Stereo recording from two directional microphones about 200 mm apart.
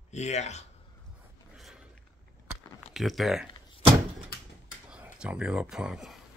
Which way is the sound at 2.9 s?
Centre (ahead or behind).